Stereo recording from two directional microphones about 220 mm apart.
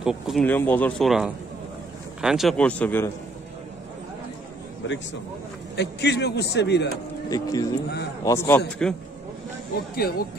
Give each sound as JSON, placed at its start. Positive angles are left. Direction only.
{"t": 0.0, "sound": "speech", "side_deg": 0}
{"t": 4.8, "sound": "a man's voice", "side_deg": 60}
{"t": 7.2, "sound": "a man's voice", "side_deg": 15}
{"t": 9.9, "sound": "a man's voice", "side_deg": 45}